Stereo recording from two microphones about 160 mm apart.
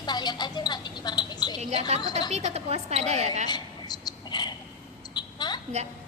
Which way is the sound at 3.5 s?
25° left (ahead or behind).